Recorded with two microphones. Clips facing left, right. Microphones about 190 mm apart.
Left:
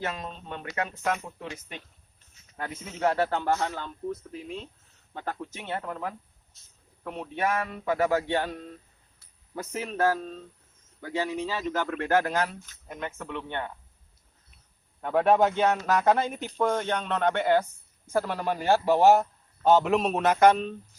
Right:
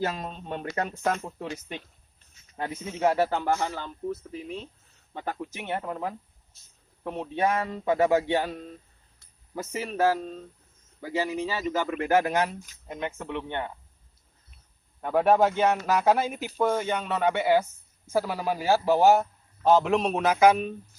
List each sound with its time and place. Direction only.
0.0 s speech: 35° right (ahead or behind)
2.6 s a man's voice: 20° right (ahead or behind)
3.0 s a man's voice: 10° right (ahead or behind)
8.3 s speech: 5° right (ahead or behind)
15.0 s a man's voice: 5° right (ahead or behind)